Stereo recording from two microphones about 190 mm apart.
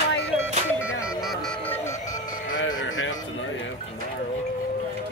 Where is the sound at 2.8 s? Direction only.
90° left.